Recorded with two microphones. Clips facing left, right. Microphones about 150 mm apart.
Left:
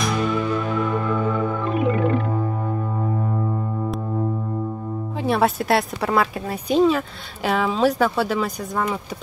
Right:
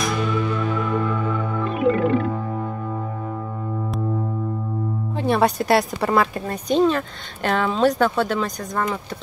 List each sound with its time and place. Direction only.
5.2 s speech: centre (ahead or behind)